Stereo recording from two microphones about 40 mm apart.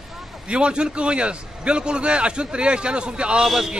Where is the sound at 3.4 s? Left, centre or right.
Centre.